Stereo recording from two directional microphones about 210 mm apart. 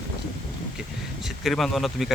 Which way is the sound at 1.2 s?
Centre (ahead or behind).